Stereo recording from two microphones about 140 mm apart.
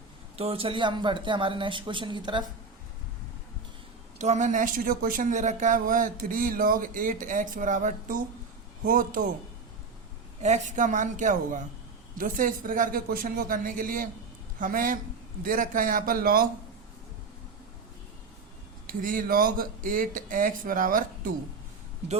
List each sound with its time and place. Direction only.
0.3 s speech: 40° right (ahead or behind)
4.2 s speech: 60° right (ahead or behind)
8.8 s speech: 85° right
10.4 s a woman's voice: 60° right (ahead or behind)
12.1 s speech: 90° right
18.9 s speech: 85° right